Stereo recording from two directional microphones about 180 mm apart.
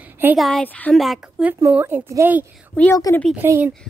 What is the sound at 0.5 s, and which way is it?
A woman's voice, 5° left (ahead or behind).